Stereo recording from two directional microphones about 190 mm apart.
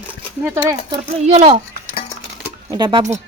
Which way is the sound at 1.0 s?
35° right (ahead or behind).